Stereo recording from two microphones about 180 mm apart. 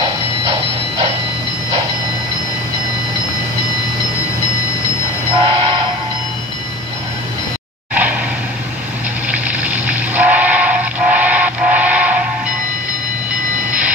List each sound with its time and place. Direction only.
0.0 s a sound: 30° right (ahead or behind)
5.4 s train: 30° right (ahead or behind)
7.9 s vehicle: 10° right (ahead or behind)
9.3 s steam whistle: 10° right (ahead or behind)
13.7 s train: 5° right (ahead or behind)